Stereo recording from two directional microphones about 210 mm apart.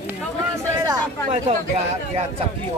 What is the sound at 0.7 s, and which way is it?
Speech, 20° right (ahead or behind).